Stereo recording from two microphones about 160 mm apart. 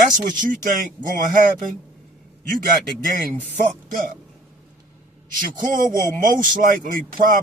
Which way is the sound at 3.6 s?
60° right (ahead or behind).